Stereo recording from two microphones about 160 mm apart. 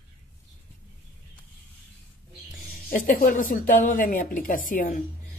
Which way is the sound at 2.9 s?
55° left (ahead or behind).